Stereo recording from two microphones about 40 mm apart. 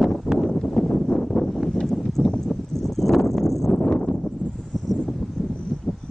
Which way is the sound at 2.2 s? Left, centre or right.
Left.